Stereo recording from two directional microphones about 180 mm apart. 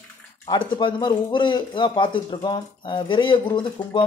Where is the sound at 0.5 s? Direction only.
25° left (ahead or behind).